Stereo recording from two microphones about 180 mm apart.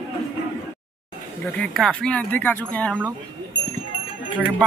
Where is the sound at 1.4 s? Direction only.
5° left (ahead or behind).